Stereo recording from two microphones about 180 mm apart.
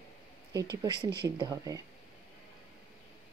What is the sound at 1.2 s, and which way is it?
Speech, 20° right (ahead or behind).